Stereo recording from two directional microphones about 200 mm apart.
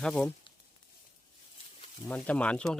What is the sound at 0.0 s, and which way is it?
Speech, 5° left (ahead or behind).